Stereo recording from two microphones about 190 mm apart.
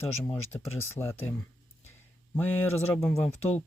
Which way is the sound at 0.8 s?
15° left (ahead or behind).